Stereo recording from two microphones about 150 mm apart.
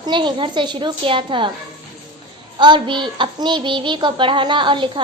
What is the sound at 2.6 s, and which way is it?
Child singing, 30° right (ahead or behind).